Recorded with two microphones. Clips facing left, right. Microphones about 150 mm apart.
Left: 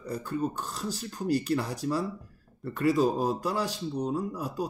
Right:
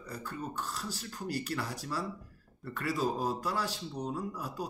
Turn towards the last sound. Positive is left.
turn(degrees=15)  # may be behind; listen again after turning